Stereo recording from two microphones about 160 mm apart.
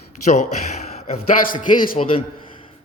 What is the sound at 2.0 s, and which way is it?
Speech, 45° left (ahead or behind).